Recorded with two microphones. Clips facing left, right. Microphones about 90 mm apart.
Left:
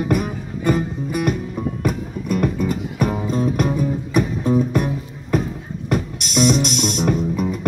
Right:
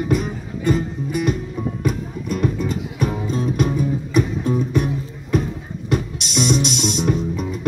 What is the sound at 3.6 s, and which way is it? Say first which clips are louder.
Music: even; 45° left (ahead or behind).